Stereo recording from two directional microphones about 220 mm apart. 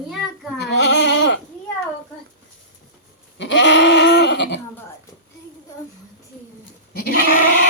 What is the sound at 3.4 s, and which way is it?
Goat, 55° left (ahead or behind).